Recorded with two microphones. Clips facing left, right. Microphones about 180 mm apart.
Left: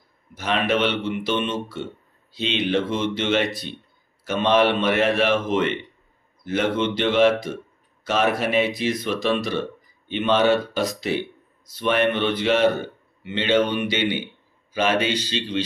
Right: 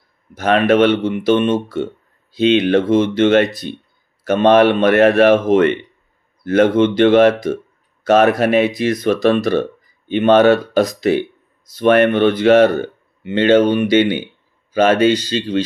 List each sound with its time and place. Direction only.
0.3 s speech: 50° right (ahead or behind)